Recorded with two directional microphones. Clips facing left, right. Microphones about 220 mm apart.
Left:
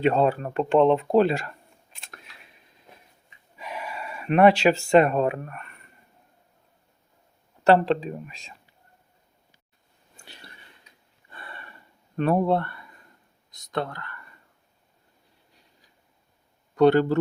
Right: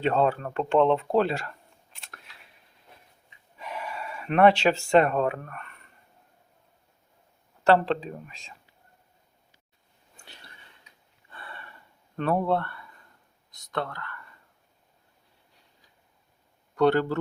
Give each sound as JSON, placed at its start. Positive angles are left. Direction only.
{"t": 0.0, "sound": "speech", "side_deg": 10}
{"t": 3.6, "sound": "speech", "side_deg": 10}
{"t": 7.6, "sound": "speech", "side_deg": 15}
{"t": 11.3, "sound": "a sound", "side_deg": 15}
{"t": 12.1, "sound": "speech", "side_deg": 15}
{"t": 16.7, "sound": "speech", "side_deg": 20}